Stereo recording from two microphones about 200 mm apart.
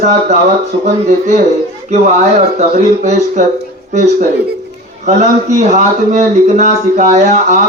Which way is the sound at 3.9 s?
35° right (ahead or behind).